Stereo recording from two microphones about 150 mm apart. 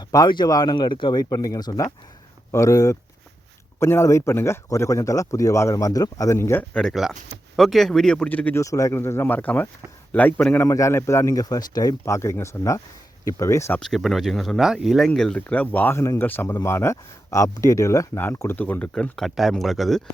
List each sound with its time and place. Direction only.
0.0 s speech: 25° left (ahead or behind); by 8.6 s 10° left (ahead or behind)
8.6 s speech: 20° left (ahead or behind)
13.7 s speech: centre (ahead or behind)